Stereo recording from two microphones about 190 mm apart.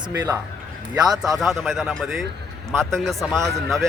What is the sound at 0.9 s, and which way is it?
A man's voice, centre (ahead or behind).